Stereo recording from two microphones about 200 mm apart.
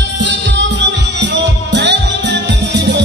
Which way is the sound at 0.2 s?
60° right (ahead or behind).